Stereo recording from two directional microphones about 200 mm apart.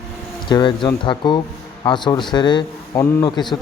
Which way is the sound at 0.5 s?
20° left (ahead or behind).